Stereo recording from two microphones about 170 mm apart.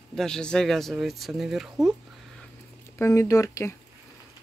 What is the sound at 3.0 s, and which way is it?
Speech, 20° left (ahead or behind).